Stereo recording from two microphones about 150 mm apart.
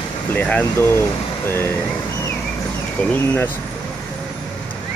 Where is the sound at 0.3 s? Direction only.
10° left (ahead or behind).